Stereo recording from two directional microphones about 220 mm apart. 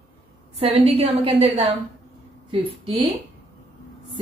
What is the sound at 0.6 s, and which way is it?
A woman's voice, 25° right (ahead or behind).